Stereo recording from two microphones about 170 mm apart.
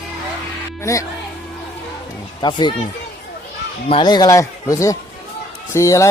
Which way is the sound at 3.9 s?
30° left (ahead or behind).